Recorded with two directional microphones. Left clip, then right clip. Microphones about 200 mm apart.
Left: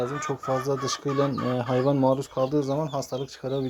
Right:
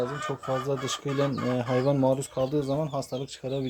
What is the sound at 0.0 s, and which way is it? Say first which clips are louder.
Speech: left 2 dB; 15° left (ahead or behind).